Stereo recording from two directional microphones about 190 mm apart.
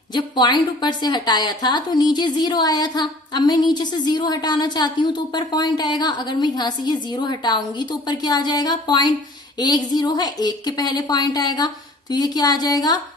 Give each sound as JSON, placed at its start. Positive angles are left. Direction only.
{"t": 0.1, "sound": "a woman's voice", "side_deg": 20}